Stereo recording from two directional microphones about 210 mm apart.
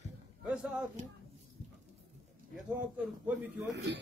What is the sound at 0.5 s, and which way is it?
Speech, 5° right (ahead or behind).